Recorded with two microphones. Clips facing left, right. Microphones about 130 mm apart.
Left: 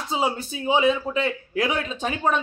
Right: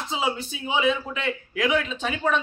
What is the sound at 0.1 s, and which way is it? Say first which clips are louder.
A man's voice: left 3 dB; 40° left (ahead or behind).